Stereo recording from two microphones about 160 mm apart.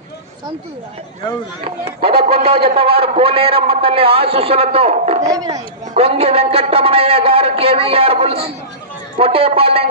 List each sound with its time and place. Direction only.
1.6 s a man's voice: 35° right (ahead or behind)
5.2 s speech: 20° right (ahead or behind)
5.9 s a man's voice: 40° right (ahead or behind)